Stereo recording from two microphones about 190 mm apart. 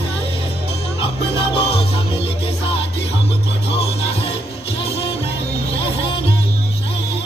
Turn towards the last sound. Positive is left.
turn(degrees=30)  # may be behind; listen again after turning